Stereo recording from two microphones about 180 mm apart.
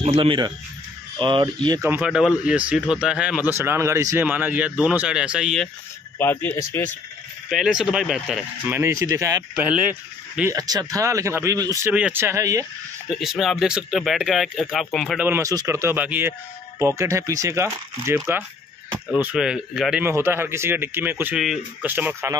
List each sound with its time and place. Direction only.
0.0 s speech: 30° right (ahead or behind)
1.9 s a man's voice: 5° right (ahead or behind)
6.1 s speech: 10° left (ahead or behind)
7.4 s speech: centre (ahead or behind)
8.6 s a man's voice: 15° right (ahead or behind)
9.7 s a man's voice: 5° right (ahead or behind)
11.9 s a man's voice: 10° right (ahead or behind)
13.1 s speech: centre (ahead or behind)
15.2 s a man's voice: 15° right (ahead or behind)